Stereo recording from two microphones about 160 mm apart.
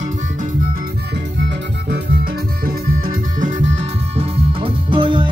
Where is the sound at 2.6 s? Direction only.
65° right (ahead or behind).